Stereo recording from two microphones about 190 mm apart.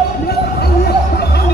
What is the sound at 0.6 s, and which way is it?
Music, 55° left (ahead or behind).